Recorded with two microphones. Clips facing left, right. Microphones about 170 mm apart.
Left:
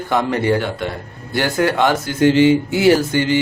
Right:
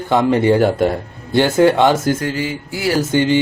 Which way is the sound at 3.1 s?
20° right (ahead or behind).